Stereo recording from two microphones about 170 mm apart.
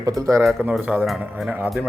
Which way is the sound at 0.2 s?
15° right (ahead or behind).